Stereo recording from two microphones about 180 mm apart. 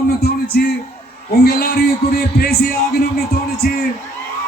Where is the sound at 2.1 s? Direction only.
55° left (ahead or behind).